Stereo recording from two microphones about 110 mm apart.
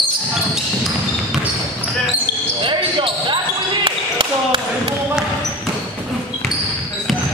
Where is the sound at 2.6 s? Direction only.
50° right (ahead or behind).